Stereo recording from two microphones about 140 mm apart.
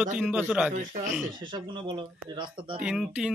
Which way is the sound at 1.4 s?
35° right (ahead or behind).